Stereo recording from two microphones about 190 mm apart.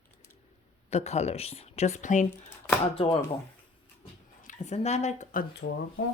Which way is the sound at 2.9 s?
30° left (ahead or behind).